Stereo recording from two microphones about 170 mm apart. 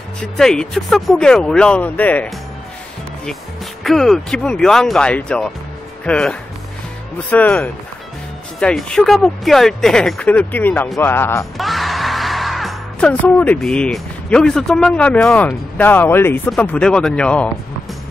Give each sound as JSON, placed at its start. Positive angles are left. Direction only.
{"t": 0.4, "sound": "speech", "side_deg": 5}
{"t": 3.8, "sound": "speech", "side_deg": 0}
{"t": 11.5, "sound": "music", "side_deg": 0}
{"t": 13.2, "sound": "speech", "side_deg": 10}